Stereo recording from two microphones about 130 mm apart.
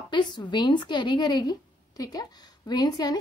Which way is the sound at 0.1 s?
35° left (ahead or behind).